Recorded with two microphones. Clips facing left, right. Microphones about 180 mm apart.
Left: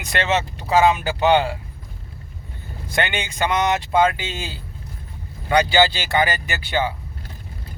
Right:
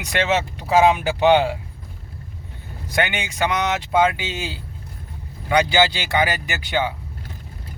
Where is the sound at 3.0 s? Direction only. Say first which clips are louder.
Right 1 dB; 10° right (ahead or behind).